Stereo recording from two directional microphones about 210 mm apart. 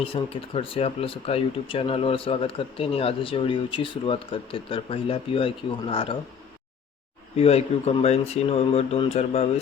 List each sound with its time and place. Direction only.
0.0 s speech: 25° left (ahead or behind)
7.3 s speech: 30° left (ahead or behind)